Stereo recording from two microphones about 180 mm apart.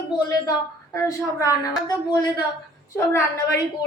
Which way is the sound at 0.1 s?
20° left (ahead or behind).